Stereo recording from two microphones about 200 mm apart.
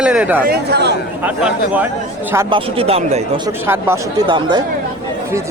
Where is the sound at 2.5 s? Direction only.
30° right (ahead or behind).